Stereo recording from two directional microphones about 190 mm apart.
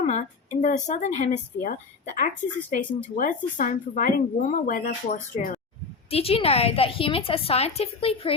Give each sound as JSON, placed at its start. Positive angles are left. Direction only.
{"t": 0.0, "sound": "a woman's voice", "side_deg": 35}
{"t": 2.7, "sound": "speech", "side_deg": 45}
{"t": 6.1, "sound": "a woman's voice", "side_deg": 30}